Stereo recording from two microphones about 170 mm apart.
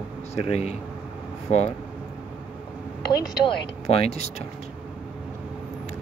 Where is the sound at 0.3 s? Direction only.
40° left (ahead or behind).